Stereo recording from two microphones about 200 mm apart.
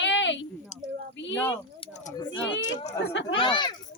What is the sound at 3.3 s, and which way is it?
Speech, 25° left (ahead or behind).